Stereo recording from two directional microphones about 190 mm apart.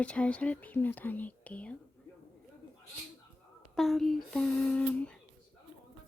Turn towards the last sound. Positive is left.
turn(degrees=5)  # may be behind; listen again after turning